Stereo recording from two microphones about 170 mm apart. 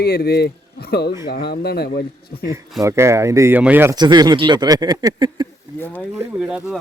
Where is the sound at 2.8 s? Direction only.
15° right (ahead or behind).